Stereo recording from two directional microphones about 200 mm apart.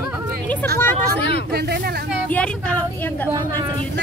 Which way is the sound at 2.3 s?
5° left (ahead or behind).